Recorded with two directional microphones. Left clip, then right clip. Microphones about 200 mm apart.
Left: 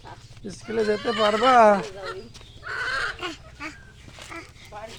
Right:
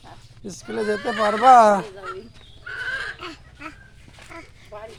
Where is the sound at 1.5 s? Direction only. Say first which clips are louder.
Even; 40° right (ahead or behind).